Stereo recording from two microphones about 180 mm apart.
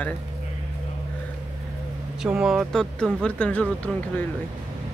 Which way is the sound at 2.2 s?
5° right (ahead or behind).